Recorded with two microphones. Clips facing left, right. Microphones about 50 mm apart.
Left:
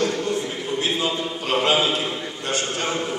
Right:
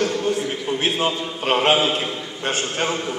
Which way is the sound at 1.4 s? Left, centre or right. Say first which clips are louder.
Right 3 dB; right.